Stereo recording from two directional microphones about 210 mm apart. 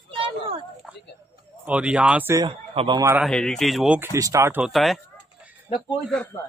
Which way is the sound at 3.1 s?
Centre (ahead or behind).